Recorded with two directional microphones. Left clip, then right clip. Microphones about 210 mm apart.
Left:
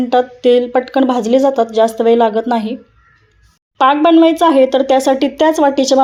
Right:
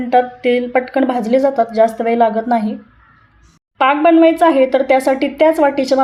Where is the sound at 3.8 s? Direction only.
30° left (ahead or behind).